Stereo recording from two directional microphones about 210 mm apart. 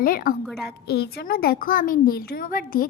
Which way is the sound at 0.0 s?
45° left (ahead or behind).